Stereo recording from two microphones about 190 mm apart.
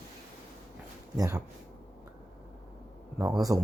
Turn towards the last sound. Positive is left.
turn(degrees=-20)  # may be behind; listen again after turning